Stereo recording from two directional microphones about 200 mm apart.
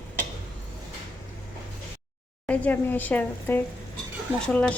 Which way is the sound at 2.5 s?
10° left (ahead or behind).